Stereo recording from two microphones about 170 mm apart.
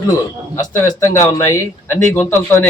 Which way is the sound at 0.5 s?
15° left (ahead or behind).